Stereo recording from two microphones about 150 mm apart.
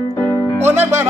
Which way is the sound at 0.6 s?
15° right (ahead or behind).